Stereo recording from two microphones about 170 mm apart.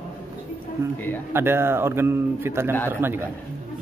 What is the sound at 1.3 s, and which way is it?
A man's voice, 15° right (ahead or behind).